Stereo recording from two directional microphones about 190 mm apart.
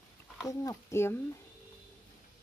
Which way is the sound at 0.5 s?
15° left (ahead or behind).